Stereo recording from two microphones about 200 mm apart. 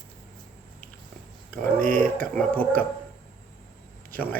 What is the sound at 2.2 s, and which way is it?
Speech, 5° left (ahead or behind).